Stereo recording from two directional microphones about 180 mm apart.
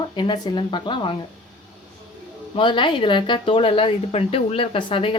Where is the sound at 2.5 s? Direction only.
25° left (ahead or behind).